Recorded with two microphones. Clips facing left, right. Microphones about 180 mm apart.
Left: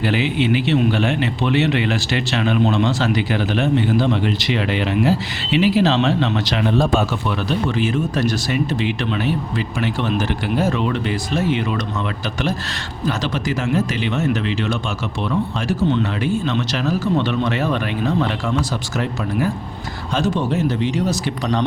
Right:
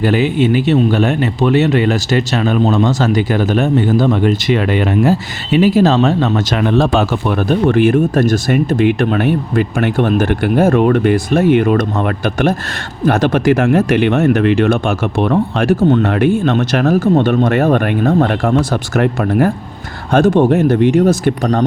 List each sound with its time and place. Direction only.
0.0 s speech: 45° right (ahead or behind)
6.7 s speech: 70° right (ahead or behind); by 21.6 s 50° right (ahead or behind)